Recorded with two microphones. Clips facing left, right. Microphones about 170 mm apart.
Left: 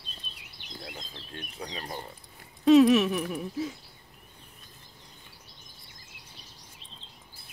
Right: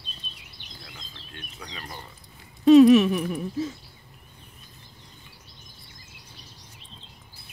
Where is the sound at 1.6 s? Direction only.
30° left (ahead or behind).